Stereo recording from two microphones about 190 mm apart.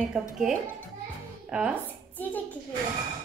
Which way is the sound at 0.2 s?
5° right (ahead or behind).